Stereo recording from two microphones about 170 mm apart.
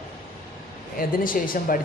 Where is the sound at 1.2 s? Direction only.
55° left (ahead or behind).